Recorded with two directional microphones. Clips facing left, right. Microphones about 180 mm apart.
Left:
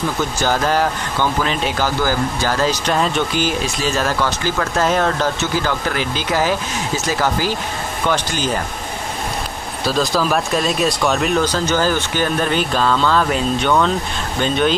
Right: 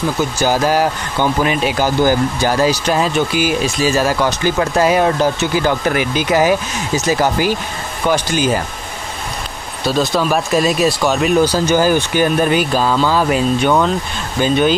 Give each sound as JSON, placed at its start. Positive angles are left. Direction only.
{"t": 0.4, "sound": "speech", "side_deg": -10}
{"t": 9.8, "sound": "speech", "side_deg": 0}